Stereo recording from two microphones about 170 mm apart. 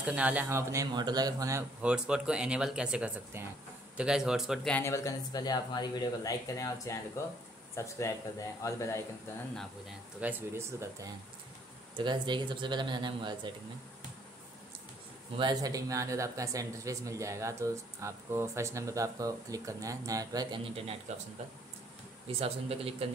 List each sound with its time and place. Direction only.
0.0 s a man's voice: 10° right (ahead or behind)
4.7 s speech: 15° left (ahead or behind)
10.2 s a man's voice: 15° right (ahead or behind)
11.9 s speech: 25° right (ahead or behind)
15.3 s speech: 25° right (ahead or behind)
20.7 s speech: 35° right (ahead or behind)
22.3 s speech: 35° right (ahead or behind)